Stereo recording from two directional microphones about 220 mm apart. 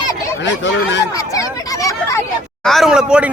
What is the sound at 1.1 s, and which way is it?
Speech, 15° left (ahead or behind).